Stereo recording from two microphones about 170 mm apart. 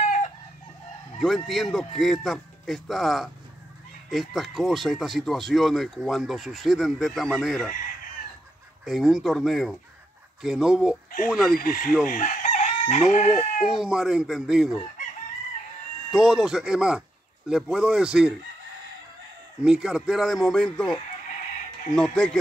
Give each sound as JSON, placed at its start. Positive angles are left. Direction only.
{"t": 0.0, "sound": "chicken", "side_deg": 45}
{"t": 1.2, "sound": "speech", "side_deg": 0}
{"t": 8.8, "sound": "speech", "side_deg": 0}
{"t": 11.5, "sound": "speech", "side_deg": 55}
{"t": 12.1, "sound": "chicken", "side_deg": 50}
{"t": 13.6, "sound": "speech", "side_deg": -5}
{"t": 16.1, "sound": "speech", "side_deg": -5}
{"t": 19.6, "sound": "speech", "side_deg": -5}
{"t": 21.9, "sound": "speech", "side_deg": 5}